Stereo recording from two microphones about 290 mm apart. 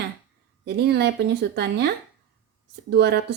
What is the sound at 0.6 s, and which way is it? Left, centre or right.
A woman's voice, right.